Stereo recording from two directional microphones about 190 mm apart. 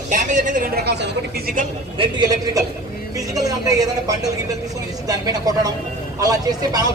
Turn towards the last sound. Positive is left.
turn(degrees=-20)  # may be behind; listen again after turning